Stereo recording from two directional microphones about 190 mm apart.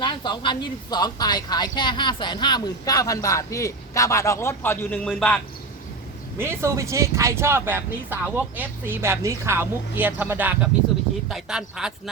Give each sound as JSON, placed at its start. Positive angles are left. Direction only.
{"t": 0.0, "sound": "speech", "side_deg": 25}
{"t": 6.3, "sound": "speech", "side_deg": -15}